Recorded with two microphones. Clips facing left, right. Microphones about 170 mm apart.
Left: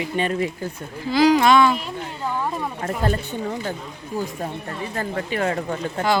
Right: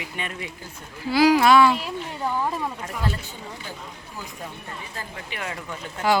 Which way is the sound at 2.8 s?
50° left (ahead or behind).